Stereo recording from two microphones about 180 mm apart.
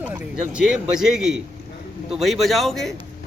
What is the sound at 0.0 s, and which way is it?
A man's voice, 5° right (ahead or behind).